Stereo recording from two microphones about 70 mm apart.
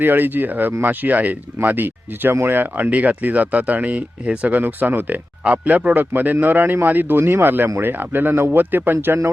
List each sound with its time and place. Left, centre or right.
0.0 s speech: right